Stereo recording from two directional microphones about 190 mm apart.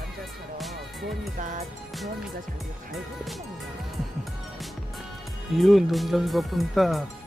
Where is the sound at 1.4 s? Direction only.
45° right (ahead or behind).